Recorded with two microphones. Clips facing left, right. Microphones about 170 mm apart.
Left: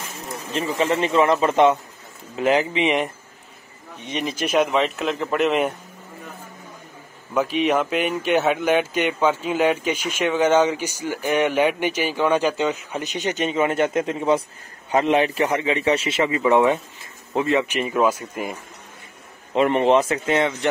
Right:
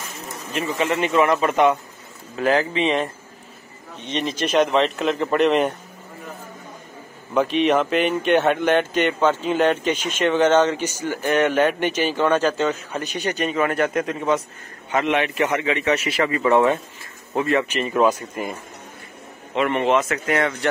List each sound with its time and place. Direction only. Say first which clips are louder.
0.7 s a man's voice: even; 35° left (ahead or behind); by 3.1 s 15° left (ahead or behind)
4.1 s a man's voice: right 1 dB; 10° left (ahead or behind)
7.3 s a man's voice: right 2 dB; 5° left (ahead or behind)
19.5 s a man's voice: left 2 dB; 35° left (ahead or behind)